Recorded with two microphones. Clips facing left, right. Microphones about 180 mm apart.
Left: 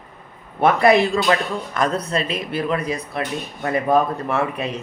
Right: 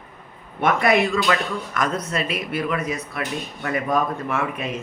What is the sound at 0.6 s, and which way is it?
Speech, 35° left (ahead or behind).